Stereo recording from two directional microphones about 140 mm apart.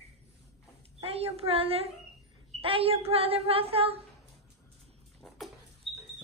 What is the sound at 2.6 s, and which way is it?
Speech, 40° right (ahead or behind).